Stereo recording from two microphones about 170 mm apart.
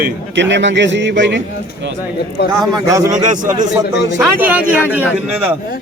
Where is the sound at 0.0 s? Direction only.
90° right.